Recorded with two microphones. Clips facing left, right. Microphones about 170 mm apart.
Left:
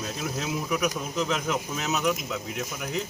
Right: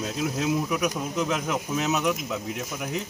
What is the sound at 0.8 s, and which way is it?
A man's voice, 15° right (ahead or behind).